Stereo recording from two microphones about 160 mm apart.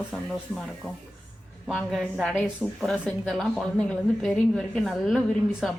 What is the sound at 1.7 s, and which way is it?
Speech, centre (ahead or behind).